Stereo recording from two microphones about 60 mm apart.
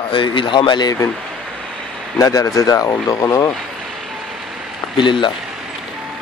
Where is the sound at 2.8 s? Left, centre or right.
Left.